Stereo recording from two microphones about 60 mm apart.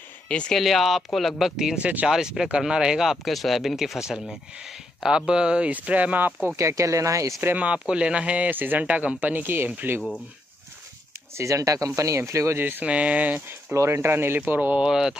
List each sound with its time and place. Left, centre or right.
0.3 s speech: centre
0.6 s speech: centre
1.8 s speech: right
2.0 s speech: centre
3.1 s speech: centre; by 6.5 s right
6.5 s speech: right
7.5 s speech: centre
11.3 s speech: right
12.5 s speech: right
12.8 s speech: right
13.7 s speech: right
14.8 s speech: centre